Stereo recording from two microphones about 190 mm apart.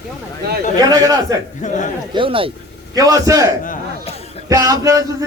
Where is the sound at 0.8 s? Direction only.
20° right (ahead or behind).